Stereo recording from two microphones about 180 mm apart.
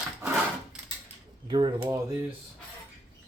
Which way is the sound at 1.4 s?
25° right (ahead or behind).